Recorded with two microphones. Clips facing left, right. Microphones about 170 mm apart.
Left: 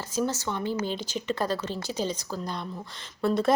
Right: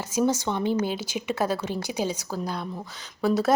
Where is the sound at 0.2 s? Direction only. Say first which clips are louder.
Right 5 dB; 15° right (ahead or behind).